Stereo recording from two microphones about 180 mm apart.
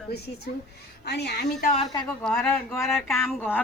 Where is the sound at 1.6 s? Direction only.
40° left (ahead or behind).